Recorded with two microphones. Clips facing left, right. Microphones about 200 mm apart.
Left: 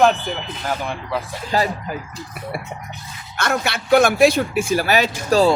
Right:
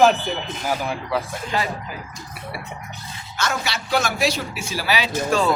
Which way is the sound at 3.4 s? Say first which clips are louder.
Left 4 dB; 55° left (ahead or behind).